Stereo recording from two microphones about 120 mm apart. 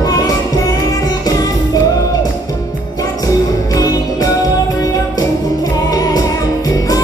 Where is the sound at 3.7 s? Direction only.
35° left (ahead or behind).